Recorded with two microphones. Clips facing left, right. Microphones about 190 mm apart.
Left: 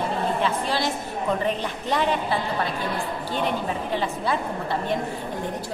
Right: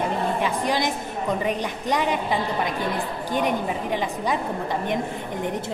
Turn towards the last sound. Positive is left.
turn(degrees=-15)  # may be behind; listen again after turning